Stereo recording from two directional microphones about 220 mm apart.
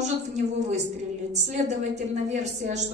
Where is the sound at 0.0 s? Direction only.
30° right (ahead or behind).